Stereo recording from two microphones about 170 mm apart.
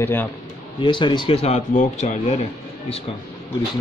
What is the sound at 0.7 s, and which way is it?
Speech, 30° left (ahead or behind).